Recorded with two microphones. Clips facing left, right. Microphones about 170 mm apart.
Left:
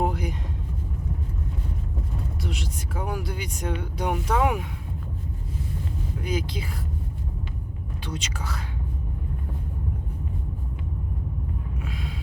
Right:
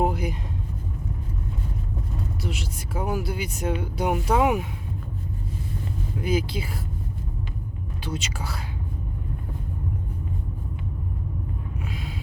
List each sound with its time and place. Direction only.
0.0 s vehicle: 5° right (ahead or behind)
2.4 s speech: 5° right (ahead or behind)
6.2 s speech: 10° right (ahead or behind)
8.0 s speech: 10° right (ahead or behind)
11.9 s a sound: centre (ahead or behind)